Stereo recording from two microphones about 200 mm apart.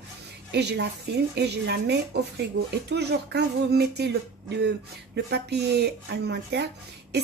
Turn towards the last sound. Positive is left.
turn(degrees=-55)  # may be behind; listen again after turning